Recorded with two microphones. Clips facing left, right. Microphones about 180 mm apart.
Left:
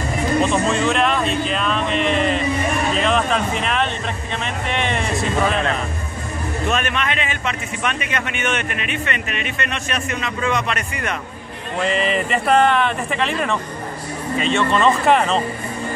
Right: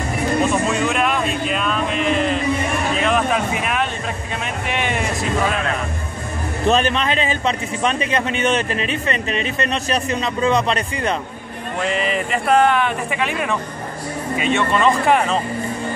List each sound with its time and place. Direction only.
0.5 s a man's voice: 5° right (ahead or behind)
6.7 s a man's voice: 30° right (ahead or behind)
11.8 s speech: centre (ahead or behind)